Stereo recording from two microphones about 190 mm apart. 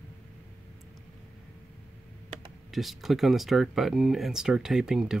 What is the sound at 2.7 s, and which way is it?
Speech, centre (ahead or behind).